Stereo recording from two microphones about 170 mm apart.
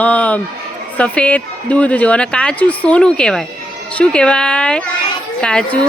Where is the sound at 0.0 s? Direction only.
10° left (ahead or behind).